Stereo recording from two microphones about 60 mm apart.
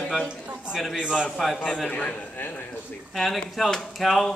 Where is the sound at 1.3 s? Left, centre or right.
Centre.